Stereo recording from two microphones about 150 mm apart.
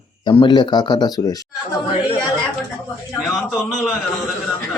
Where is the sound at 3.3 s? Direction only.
5° left (ahead or behind).